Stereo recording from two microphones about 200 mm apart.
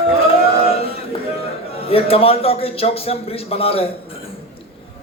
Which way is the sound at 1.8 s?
30° left (ahead or behind).